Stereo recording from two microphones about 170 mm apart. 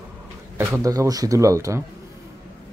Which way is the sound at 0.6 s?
15° right (ahead or behind).